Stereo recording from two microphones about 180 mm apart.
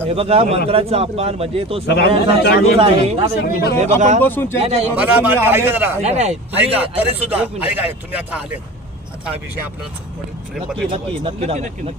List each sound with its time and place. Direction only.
0.0 s speech: 35° right (ahead or behind)
1.9 s a man's voice: 65° left (ahead or behind)
2.8 s speech: 35° right (ahead or behind)
3.4 s a man's voice: 60° left (ahead or behind)
3.8 s speech: 40° right (ahead or behind)
4.2 s speech: 10° left (ahead or behind)
4.6 s speech: 35° right (ahead or behind)
4.9 s speech: 10° right (ahead or behind)
6.0 s speech: 40° right (ahead or behind)
6.6 s speech: 10° right (ahead or behind)
10.9 s speech: 30° right (ahead or behind)